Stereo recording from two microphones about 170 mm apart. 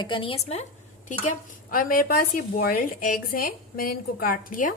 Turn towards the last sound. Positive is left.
turn(degrees=55)  # may be behind; listen again after turning